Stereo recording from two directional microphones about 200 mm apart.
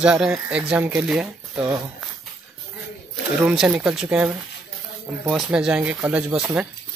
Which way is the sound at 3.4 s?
5° right (ahead or behind).